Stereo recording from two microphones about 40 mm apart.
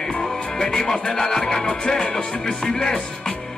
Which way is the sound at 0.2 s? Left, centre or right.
Centre.